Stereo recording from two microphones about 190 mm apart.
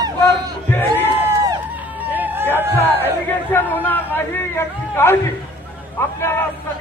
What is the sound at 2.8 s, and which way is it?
A man's voice, 10° left (ahead or behind).